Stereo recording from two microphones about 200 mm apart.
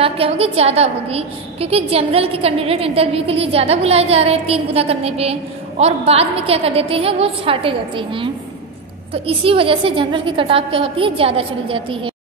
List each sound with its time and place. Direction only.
0.0 s a woman's voice: 30° right (ahead or behind)